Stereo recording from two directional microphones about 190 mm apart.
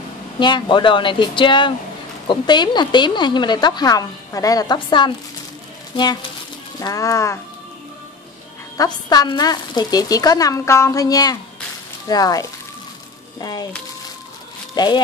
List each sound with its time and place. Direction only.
0.4 s a woman's voice: 25° left (ahead or behind)
6.8 s speech: 15° left (ahead or behind)
8.7 s a woman's voice: 20° left (ahead or behind)
14.8 s a woman's voice: 20° left (ahead or behind)